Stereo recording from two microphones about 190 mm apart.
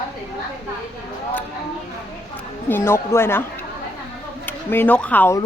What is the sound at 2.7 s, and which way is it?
Speech, 10° left (ahead or behind).